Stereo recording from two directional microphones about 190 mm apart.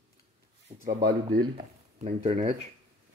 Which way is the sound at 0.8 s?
50° right (ahead or behind).